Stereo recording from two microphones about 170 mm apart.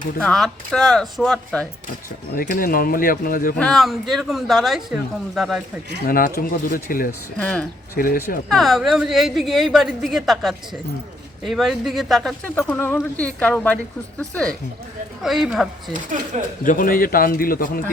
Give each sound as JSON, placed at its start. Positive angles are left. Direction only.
{"t": 0.2, "sound": "a woman's voice", "side_deg": 0}
{"t": 2.3, "sound": "speech", "side_deg": 55}
{"t": 3.6, "sound": "a woman's voice", "side_deg": 0}
{"t": 6.1, "sound": "speech", "side_deg": 55}
{"t": 7.3, "sound": "speech", "side_deg": 5}
{"t": 7.9, "sound": "speech", "side_deg": 55}
{"t": 8.4, "sound": "a woman's voice", "side_deg": 0}
{"t": 12.5, "sound": "a woman's voice", "side_deg": 10}
{"t": 15.9, "sound": "speech", "side_deg": -50}
{"t": 16.6, "sound": "speech", "side_deg": 55}